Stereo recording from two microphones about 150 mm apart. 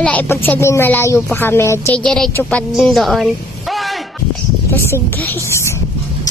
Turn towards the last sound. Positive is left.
turn(degrees=15)  # may be behind; listen again after turning